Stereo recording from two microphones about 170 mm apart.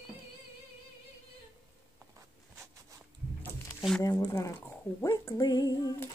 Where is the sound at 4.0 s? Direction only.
20° left (ahead or behind).